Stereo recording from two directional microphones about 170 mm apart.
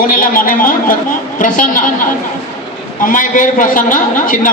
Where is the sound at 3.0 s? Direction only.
50° left (ahead or behind).